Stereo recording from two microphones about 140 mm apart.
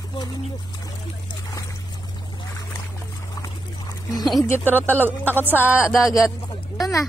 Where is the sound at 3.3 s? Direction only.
25° left (ahead or behind).